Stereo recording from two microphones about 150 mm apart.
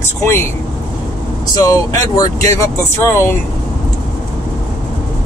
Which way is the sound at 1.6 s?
25° left (ahead or behind).